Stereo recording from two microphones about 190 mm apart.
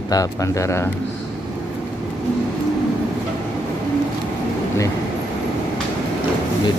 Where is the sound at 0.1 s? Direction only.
20° left (ahead or behind).